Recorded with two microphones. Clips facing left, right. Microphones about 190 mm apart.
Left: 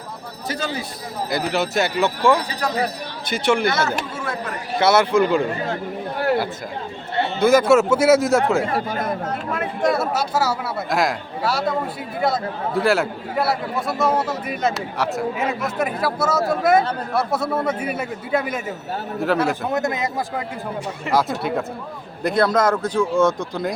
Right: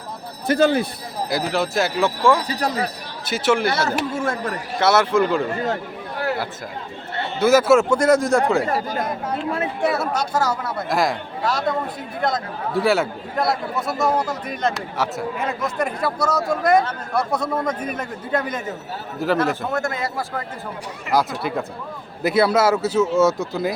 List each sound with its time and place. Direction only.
0.4 s speech: 55° right (ahead or behind)
1.3 s a man's voice: centre (ahead or behind)
2.5 s speech: 35° right (ahead or behind)
3.2 s a man's voice: 5° right (ahead or behind)
3.7 s speech: 35° right (ahead or behind)
4.1 s speech: 45° right (ahead or behind)
4.8 s a man's voice: centre (ahead or behind)
7.3 s a man's voice: 5° right (ahead or behind)
9.8 s a man's voice: centre (ahead or behind)
19.7 s speech: 20° left (ahead or behind)
21.1 s a man's voice: centre (ahead or behind)